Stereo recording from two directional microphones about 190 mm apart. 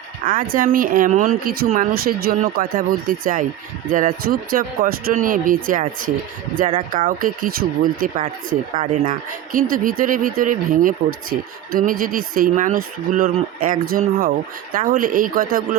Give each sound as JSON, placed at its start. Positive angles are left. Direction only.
{"t": 0.3, "sound": "a woman's voice", "side_deg": -45}